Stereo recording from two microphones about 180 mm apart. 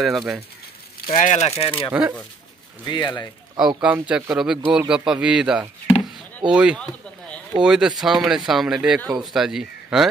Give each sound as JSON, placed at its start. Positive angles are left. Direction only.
{"t": 0.0, "sound": "speech", "side_deg": 0}
{"t": 1.1, "sound": "speech", "side_deg": 45}
{"t": 1.9, "sound": "speech", "side_deg": -10}
{"t": 2.8, "sound": "speech", "side_deg": 25}
{"t": 3.5, "sound": "speech", "side_deg": -5}